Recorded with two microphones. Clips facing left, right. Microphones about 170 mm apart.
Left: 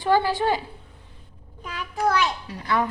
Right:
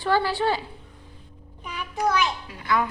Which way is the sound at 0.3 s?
15° left (ahead or behind).